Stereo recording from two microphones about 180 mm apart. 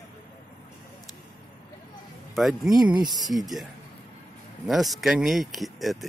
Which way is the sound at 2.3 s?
Centre (ahead or behind).